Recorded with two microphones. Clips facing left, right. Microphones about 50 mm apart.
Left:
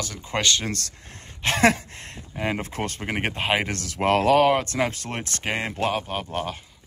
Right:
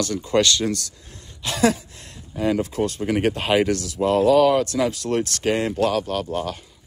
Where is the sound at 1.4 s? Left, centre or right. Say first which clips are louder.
Left 1 dB; left.